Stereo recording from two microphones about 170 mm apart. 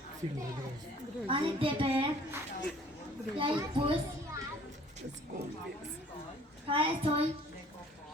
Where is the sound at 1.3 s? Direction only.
30° right (ahead or behind).